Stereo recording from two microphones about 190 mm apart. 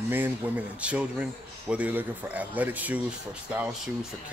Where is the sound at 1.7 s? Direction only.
10° right (ahead or behind).